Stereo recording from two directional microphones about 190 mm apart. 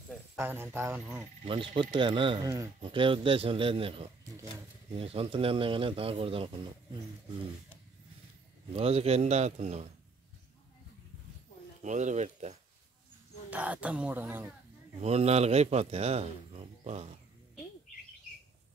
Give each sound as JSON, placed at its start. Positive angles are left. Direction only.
{"t": 0.4, "sound": "speech", "side_deg": -10}
{"t": 1.4, "sound": "speech", "side_deg": -25}
{"t": 8.7, "sound": "speech", "side_deg": -30}
{"t": 11.8, "sound": "speech", "side_deg": -40}
{"t": 13.5, "sound": "speech", "side_deg": -5}
{"t": 15.0, "sound": "speech", "side_deg": -35}